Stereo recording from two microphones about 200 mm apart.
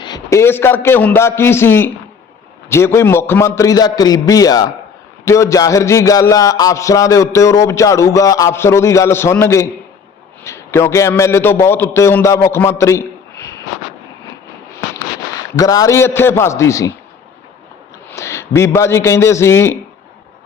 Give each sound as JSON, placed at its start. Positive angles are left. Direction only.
{"t": 0.0, "sound": "a man's voice", "side_deg": 15}
{"t": 15.4, "sound": "a man's voice", "side_deg": 15}
{"t": 18.1, "sound": "a man's voice", "side_deg": 15}